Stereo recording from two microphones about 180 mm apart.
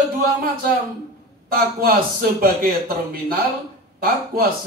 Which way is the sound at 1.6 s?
55° right (ahead or behind).